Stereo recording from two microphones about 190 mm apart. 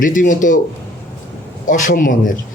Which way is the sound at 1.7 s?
45° left (ahead or behind).